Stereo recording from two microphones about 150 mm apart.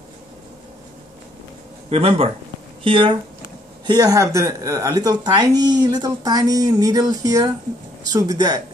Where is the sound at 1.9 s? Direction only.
40° right (ahead or behind).